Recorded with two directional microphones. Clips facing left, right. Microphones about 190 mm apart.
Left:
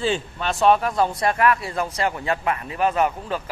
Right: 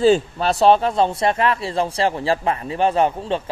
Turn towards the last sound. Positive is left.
turn(degrees=-30)  # may be behind; listen again after turning